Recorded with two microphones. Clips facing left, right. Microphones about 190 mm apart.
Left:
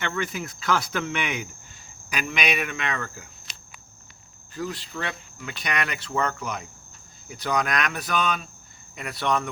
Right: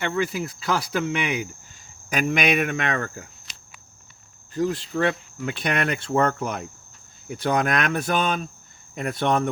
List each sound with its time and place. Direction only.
0.0 s speech: 30° right (ahead or behind)
2.0 s speech: 50° right (ahead or behind)
4.5 s speech: 45° right (ahead or behind)